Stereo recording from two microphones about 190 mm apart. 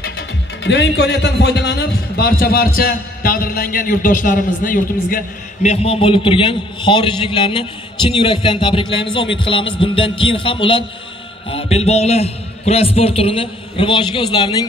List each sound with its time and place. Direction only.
0.7 s a man's voice: 65° left (ahead or behind); by 14.5 s 25° left (ahead or behind)